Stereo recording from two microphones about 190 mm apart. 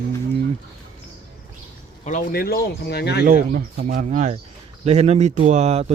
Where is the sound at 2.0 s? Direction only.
45° left (ahead or behind).